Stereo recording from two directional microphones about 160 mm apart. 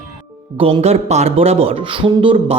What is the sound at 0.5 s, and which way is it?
Speech, 35° right (ahead or behind).